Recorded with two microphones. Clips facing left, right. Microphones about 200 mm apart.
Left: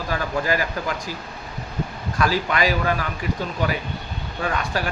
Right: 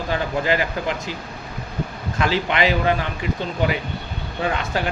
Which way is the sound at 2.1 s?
25° right (ahead or behind).